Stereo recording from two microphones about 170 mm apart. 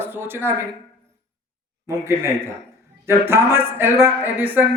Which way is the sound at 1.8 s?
15° right (ahead or behind).